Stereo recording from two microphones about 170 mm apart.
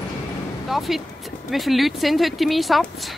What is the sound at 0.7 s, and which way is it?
Speech, centre (ahead or behind).